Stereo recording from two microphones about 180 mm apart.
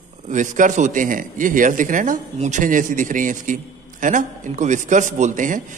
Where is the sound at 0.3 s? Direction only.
45° right (ahead or behind).